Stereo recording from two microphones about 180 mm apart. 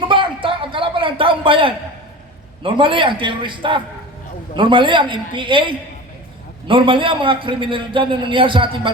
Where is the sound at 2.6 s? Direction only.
30° right (ahead or behind).